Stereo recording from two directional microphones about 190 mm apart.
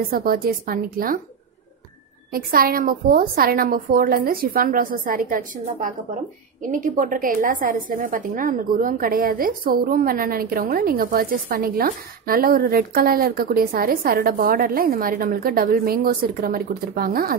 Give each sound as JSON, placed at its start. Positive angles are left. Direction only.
{"t": 0.1, "sound": "a woman's voice", "side_deg": -50}
{"t": 2.3, "sound": "a woman's voice", "side_deg": -50}